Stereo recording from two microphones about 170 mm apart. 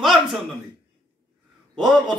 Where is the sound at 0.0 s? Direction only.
Centre (ahead or behind).